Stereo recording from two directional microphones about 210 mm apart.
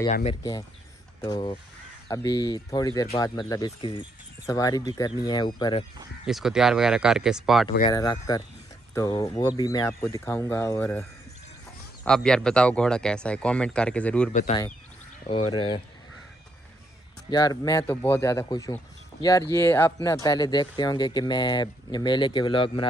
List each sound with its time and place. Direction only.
0.1 s speech: 30° left (ahead or behind)
0.4 s speech: 15° left (ahead or behind)
6.2 s speech: centre (ahead or behind)
7.9 s speech: 15° left (ahead or behind)
14.3 s speech: 40° left (ahead or behind)
15.2 s speech: 25° left (ahead or behind)
17.3 s speech: 20° left (ahead or behind)